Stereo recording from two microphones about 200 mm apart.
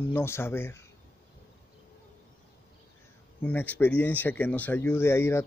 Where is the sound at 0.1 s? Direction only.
10° left (ahead or behind).